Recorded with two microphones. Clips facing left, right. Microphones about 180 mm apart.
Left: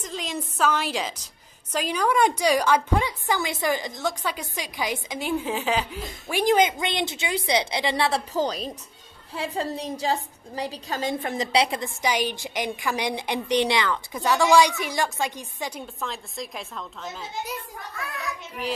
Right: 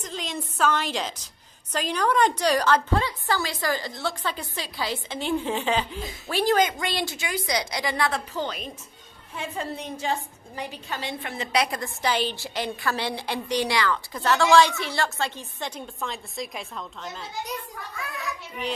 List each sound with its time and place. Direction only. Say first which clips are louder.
0.0 s a woman's voice: left 1 dB; 5° left (ahead or behind)
6.3 s a woman's voice: left 2 dB; 15° left (ahead or behind); by 11.4 s 45° left (ahead or behind)
11.5 s a woman's voice: left 1 dB; 25° left (ahead or behind); by 18.7 s centre (ahead or behind)